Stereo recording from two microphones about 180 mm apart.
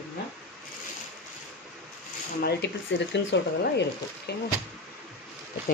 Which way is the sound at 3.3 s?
80° left.